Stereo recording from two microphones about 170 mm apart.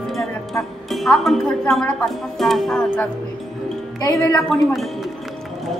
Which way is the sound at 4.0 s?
20° left (ahead or behind).